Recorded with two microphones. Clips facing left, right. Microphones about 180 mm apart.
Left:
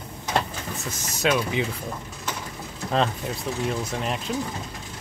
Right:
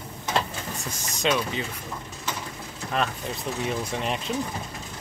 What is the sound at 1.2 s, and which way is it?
Speech, 5° left (ahead or behind).